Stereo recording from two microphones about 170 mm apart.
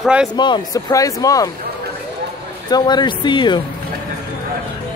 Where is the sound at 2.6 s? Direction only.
25° left (ahead or behind).